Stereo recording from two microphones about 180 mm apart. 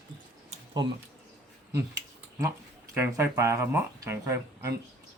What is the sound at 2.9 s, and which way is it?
Speech, 15° right (ahead or behind).